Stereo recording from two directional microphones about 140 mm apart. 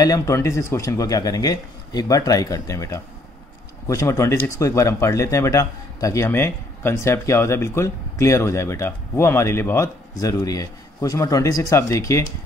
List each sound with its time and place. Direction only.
0.0 s speech: 25° left (ahead or behind)